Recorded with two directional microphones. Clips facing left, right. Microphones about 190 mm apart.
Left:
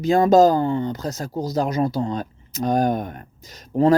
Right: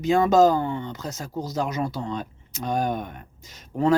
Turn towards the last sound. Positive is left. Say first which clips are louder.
# left 5 dB
turn(degrees=40)  # may be behind; listen again after turning